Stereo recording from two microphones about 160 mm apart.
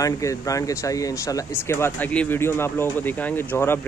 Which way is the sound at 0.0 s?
20° left (ahead or behind).